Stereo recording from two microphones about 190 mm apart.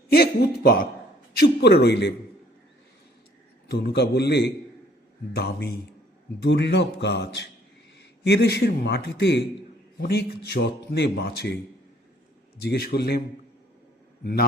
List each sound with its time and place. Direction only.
0.1 s speech: 55° left (ahead or behind)
3.7 s speech: 60° left (ahead or behind)
12.5 s speech: 60° left (ahead or behind)